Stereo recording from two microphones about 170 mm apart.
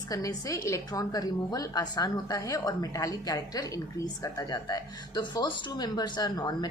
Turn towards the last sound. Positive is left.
turn(degrees=25)  # may be behind; listen again after turning